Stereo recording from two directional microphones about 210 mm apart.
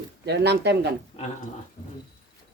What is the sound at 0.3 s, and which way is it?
Speech, 55° right (ahead or behind).